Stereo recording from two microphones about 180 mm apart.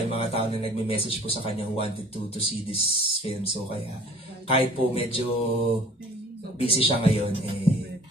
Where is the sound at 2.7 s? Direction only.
30° left (ahead or behind).